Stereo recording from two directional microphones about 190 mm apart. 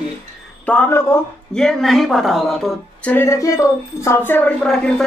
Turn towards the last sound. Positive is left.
turn(degrees=5)  # may be behind; listen again after turning